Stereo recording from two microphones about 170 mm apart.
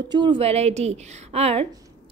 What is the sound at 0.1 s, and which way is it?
A woman's voice, 30° right (ahead or behind).